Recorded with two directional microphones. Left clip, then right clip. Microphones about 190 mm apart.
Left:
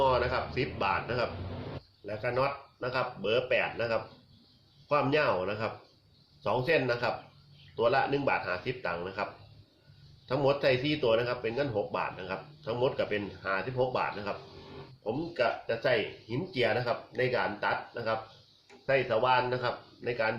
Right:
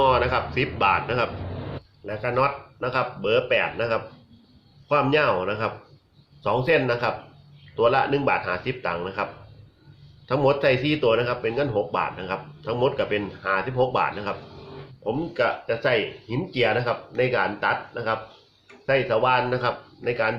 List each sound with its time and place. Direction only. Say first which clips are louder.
0.0 s speech: right 7 dB; 10° right (ahead or behind)
10.2 s speech: right 7 dB; 5° right (ahead or behind)